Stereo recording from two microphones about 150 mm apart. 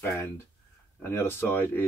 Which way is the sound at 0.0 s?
15° left (ahead or behind).